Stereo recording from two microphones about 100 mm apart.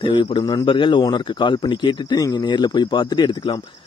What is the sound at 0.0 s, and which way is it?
A man's voice, 55° left (ahead or behind).